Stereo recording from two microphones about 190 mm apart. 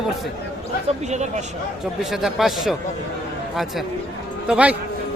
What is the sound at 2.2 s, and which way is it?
Speech, centre (ahead or behind).